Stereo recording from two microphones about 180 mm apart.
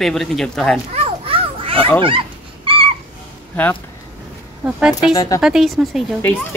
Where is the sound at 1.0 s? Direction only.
30° right (ahead or behind).